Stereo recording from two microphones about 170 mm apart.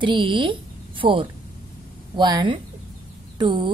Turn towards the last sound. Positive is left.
turn(degrees=-30)  # may be behind; listen again after turning